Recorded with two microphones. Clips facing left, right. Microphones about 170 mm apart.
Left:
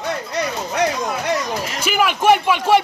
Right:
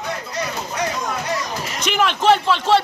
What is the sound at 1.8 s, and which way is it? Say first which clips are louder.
A man's voice: even; 10° left (ahead or behind).